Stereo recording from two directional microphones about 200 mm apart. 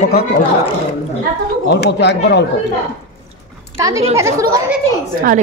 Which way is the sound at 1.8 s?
60° left (ahead or behind).